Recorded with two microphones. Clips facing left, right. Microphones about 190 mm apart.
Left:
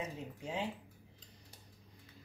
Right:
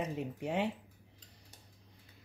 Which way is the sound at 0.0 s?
65° right (ahead or behind).